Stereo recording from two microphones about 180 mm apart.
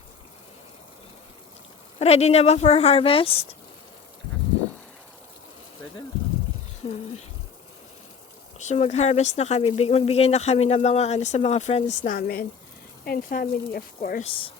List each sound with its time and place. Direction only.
2.0 s speech: 35° left (ahead or behind)
8.5 s speech: 40° left (ahead or behind)
12.1 s a woman's voice: 55° left (ahead or behind)
14.3 s speech: 30° left (ahead or behind)